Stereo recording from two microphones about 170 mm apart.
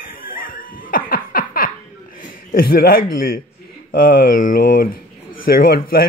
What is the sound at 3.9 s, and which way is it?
Speech, 60° left (ahead or behind).